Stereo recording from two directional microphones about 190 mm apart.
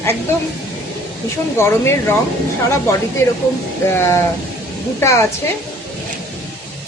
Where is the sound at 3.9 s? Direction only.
15° left (ahead or behind).